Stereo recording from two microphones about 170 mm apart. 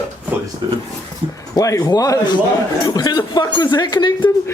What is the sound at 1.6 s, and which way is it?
Speech, 20° left (ahead or behind).